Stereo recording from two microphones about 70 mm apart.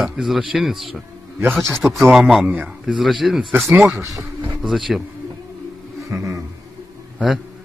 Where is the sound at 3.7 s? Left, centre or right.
Right.